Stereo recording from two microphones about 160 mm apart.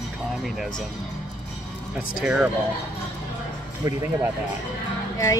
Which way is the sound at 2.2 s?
10° right (ahead or behind).